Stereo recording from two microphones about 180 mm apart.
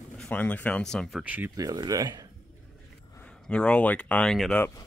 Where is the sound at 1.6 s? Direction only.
20° right (ahead or behind).